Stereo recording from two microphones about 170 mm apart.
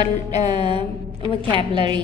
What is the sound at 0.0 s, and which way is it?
Music, 25° right (ahead or behind).